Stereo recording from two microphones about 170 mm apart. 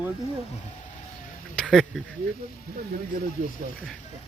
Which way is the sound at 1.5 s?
5° left (ahead or behind).